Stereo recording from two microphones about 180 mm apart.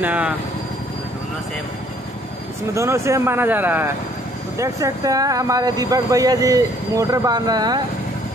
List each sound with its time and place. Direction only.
0.0 s speech: 10° right (ahead or behind)
2.7 s speech: 15° right (ahead or behind)